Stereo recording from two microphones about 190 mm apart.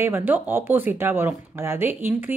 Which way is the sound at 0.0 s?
10° right (ahead or behind).